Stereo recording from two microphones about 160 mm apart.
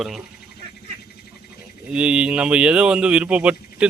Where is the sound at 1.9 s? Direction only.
5° right (ahead or behind).